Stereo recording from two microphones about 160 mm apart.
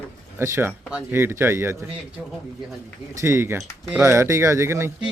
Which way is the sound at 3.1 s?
15° right (ahead or behind).